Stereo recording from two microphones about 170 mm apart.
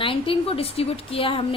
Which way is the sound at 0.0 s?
30° left (ahead or behind).